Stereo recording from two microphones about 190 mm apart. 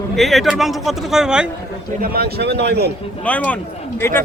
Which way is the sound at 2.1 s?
55° right (ahead or behind).